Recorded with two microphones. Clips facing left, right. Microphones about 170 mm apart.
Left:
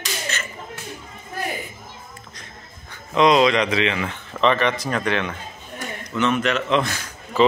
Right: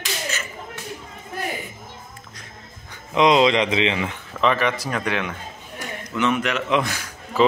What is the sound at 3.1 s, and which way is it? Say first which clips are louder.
A man's voice: even; 20° right (ahead or behind).